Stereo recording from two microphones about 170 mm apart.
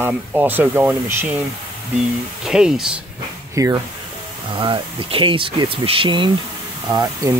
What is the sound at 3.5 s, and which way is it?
Speech, 20° right (ahead or behind).